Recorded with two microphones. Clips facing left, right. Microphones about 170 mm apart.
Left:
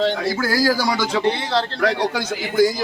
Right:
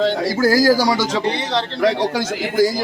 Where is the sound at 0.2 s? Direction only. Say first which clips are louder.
Right 4 dB; 35° right (ahead or behind).